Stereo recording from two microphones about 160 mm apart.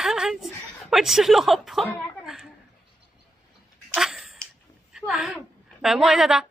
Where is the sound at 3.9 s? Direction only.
5° right (ahead or behind).